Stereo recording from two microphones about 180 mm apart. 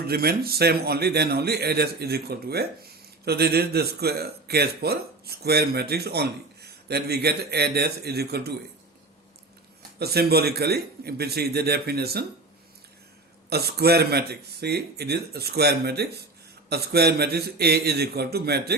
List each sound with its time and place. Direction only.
0.1 s a man's voice: 60° right (ahead or behind)
10.0 s a man's voice: 60° right (ahead or behind)
13.5 s a man's voice: 60° right (ahead or behind)